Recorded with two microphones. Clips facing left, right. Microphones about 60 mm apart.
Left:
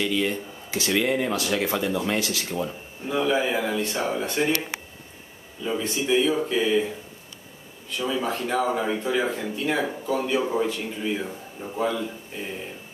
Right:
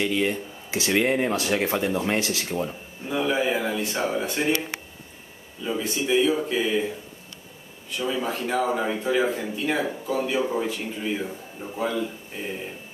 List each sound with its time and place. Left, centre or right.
0.0 s speech: centre
2.1 s speech: right
2.4 s speech: centre
2.7 s a man's voice: centre
5.6 s a man's voice: centre
8.0 s a man's voice: centre